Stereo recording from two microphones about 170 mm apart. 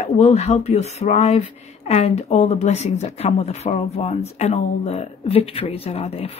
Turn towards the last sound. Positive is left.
turn(degrees=35)  # may be behind; listen again after turning